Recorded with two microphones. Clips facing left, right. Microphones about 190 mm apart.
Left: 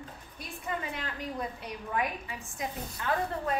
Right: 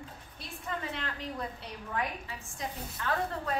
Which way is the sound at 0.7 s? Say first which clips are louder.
Left 1 dB; 10° left (ahead or behind).